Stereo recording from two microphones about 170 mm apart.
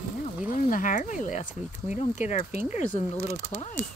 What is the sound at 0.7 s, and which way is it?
Speech, 50° left (ahead or behind).